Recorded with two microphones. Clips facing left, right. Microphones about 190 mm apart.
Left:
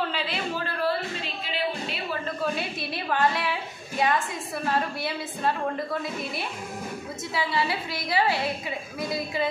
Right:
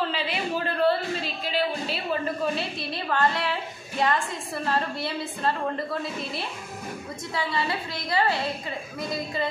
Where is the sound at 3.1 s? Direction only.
5° left (ahead or behind).